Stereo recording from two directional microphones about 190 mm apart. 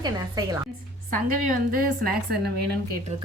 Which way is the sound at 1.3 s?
45° right (ahead or behind).